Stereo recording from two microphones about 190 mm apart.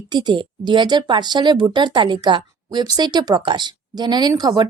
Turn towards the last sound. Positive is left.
turn(degrees=-20)  # may be behind; listen again after turning